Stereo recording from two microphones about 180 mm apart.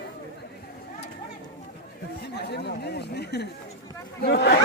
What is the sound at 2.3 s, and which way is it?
Speech, 65° left (ahead or behind).